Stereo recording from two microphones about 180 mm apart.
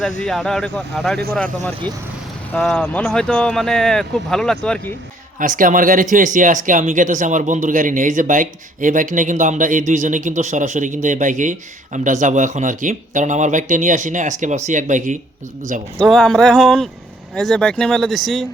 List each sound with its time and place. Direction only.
0.3 s speech: centre (ahead or behind)
2.5 s speech: 5° left (ahead or behind)
5.4 s speech: 45° right (ahead or behind)
16.0 s speech: 5° left (ahead or behind)